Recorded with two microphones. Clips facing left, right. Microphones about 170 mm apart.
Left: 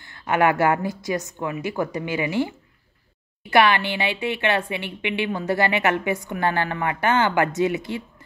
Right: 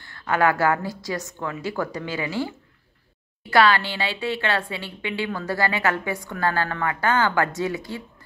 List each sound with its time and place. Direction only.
0.0 s speech: 20° left (ahead or behind)